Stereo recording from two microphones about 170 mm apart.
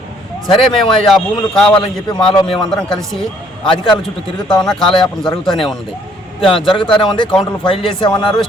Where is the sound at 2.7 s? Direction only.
Centre (ahead or behind).